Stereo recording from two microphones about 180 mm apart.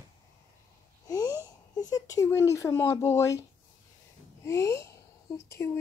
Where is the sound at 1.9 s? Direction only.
20° left (ahead or behind).